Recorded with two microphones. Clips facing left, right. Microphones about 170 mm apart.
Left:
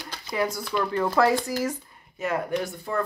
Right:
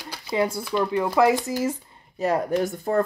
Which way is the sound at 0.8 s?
15° right (ahead or behind).